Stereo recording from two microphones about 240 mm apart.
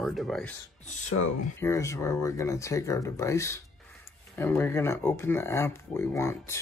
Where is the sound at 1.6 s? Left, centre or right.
Centre.